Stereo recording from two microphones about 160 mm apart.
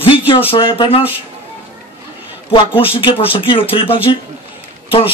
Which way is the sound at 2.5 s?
35° left (ahead or behind).